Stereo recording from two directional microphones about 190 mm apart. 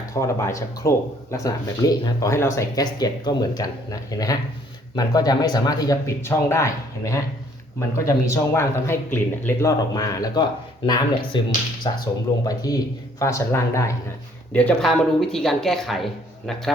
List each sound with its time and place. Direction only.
0.1 s speech: 15° left (ahead or behind)
14.5 s speech: 5° left (ahead or behind)